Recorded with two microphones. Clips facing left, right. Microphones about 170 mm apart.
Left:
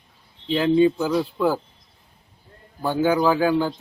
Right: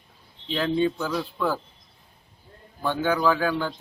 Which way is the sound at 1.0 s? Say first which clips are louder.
Left 5 dB; 20° left (ahead or behind).